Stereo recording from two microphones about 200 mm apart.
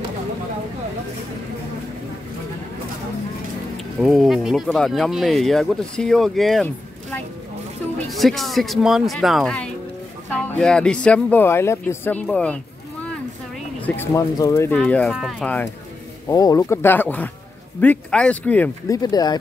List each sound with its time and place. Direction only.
3.7 s speech: centre (ahead or behind)
13.7 s speech: 10° left (ahead or behind)
16.3 s speech: 15° left (ahead or behind)
18.9 s speech: 20° left (ahead or behind)